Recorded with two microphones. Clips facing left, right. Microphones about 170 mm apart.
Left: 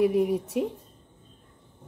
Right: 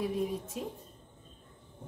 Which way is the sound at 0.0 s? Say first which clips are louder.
Left 10 dB; 70° left (ahead or behind).